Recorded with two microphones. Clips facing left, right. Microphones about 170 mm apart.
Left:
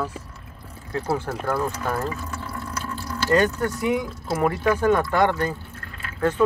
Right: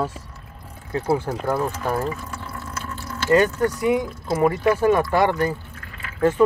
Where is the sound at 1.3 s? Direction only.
15° right (ahead or behind).